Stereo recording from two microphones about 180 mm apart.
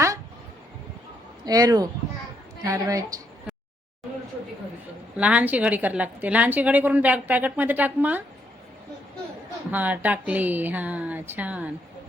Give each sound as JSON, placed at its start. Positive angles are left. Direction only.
{"t": 1.5, "sound": "a woman's voice", "side_deg": -20}
{"t": 5.1, "sound": "a woman's voice", "side_deg": -5}
{"t": 9.7, "sound": "a woman's voice", "side_deg": -10}